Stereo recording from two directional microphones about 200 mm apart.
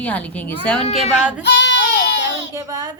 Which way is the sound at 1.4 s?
60° left (ahead or behind).